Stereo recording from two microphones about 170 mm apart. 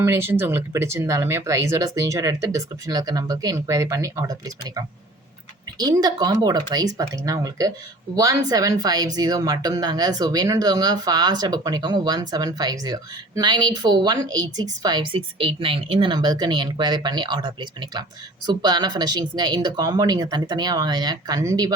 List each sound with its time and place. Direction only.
0.0 s speech: 15° right (ahead or behind)